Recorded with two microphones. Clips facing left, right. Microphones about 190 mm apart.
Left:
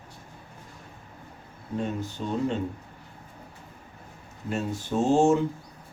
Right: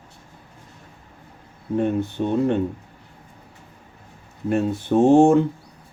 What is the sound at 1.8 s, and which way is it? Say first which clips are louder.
Speech: right 9 dB; 60° right (ahead or behind).